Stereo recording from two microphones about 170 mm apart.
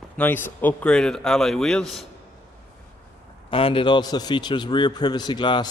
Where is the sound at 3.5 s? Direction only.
30° left (ahead or behind).